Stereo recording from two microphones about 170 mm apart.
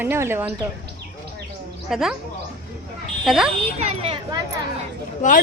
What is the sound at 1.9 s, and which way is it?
Speech, centre (ahead or behind).